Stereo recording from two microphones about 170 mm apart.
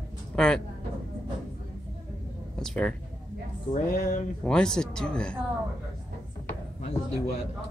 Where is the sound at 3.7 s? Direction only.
60° left (ahead or behind).